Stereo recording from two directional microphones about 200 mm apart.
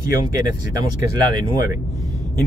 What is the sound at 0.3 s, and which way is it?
Speech, 20° right (ahead or behind).